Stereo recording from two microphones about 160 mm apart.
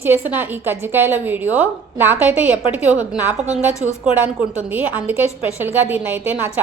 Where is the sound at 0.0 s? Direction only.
15° right (ahead or behind).